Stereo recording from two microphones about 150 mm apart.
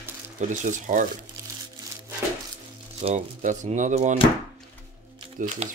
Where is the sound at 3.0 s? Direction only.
55° right (ahead or behind).